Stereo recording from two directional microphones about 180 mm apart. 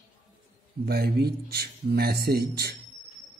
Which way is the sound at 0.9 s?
60° right (ahead or behind).